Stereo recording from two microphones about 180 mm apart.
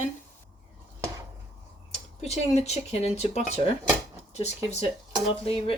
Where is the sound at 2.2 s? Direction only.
35° left (ahead or behind).